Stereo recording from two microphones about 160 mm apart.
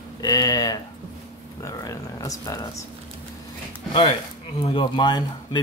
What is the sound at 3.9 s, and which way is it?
Speech, 30° left (ahead or behind).